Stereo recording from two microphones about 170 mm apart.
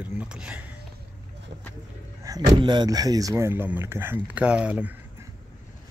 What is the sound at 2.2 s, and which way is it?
Speech, 20° right (ahead or behind).